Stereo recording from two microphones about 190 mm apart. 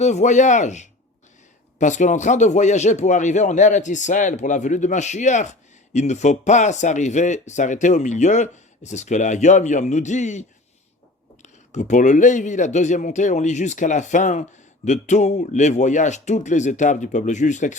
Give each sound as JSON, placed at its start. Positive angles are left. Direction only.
{"t": 0.0, "sound": "speech", "side_deg": 40}
{"t": 11.4, "sound": "speech", "side_deg": 40}